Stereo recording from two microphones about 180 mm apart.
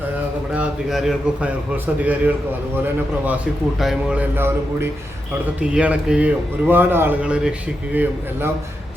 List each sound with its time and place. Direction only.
0.5 s a man's voice: 5° right (ahead or behind)